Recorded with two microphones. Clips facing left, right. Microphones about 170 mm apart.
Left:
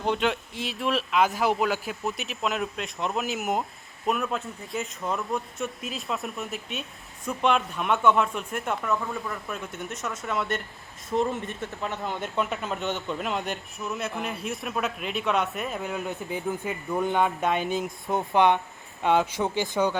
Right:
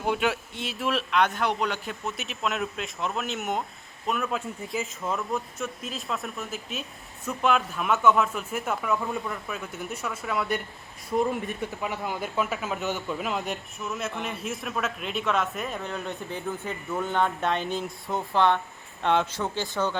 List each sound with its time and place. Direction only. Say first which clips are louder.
0.0 s speech: left 1 dB; 5° right (ahead or behind)
11.3 s speech: right 2 dB; 15° right (ahead or behind); by 17.8 s 10° left (ahead or behind)
18.0 s speech: left 2 dB; 20° left (ahead or behind)
19.0 s speech: left 2 dB; 5° left (ahead or behind)